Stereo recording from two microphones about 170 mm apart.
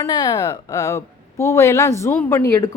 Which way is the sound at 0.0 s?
25° left (ahead or behind).